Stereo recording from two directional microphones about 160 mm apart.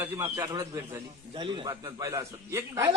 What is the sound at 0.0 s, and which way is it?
Speech, 15° right (ahead or behind).